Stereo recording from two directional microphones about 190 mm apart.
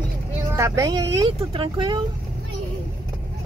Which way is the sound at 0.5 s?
15° right (ahead or behind).